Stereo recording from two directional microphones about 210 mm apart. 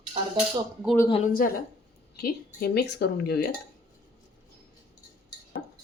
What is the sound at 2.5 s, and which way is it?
Speech, 50° left (ahead or behind).